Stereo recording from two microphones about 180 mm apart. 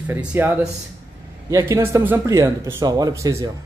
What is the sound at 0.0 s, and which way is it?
Speech, 10° right (ahead or behind).